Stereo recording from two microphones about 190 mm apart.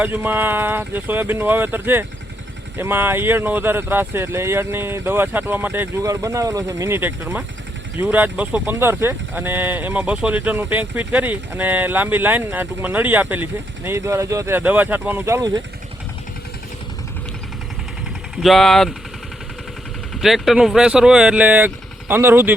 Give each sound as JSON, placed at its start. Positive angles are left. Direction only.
{"t": 0.0, "sound": "speech", "side_deg": -10}
{"t": 15.4, "sound": "speech", "side_deg": -20}
{"t": 18.4, "sound": "speech", "side_deg": 0}
{"t": 20.2, "sound": "speech", "side_deg": 0}